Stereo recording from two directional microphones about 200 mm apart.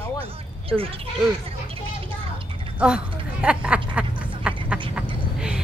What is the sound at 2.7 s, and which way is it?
Speech, 5° right (ahead or behind).